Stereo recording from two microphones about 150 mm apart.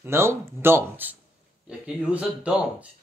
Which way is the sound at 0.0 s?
15° right (ahead or behind).